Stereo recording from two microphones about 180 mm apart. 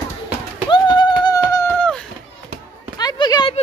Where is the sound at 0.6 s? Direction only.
25° left (ahead or behind).